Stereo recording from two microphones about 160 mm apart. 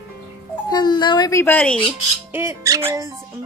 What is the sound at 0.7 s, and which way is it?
Music, 25° left (ahead or behind).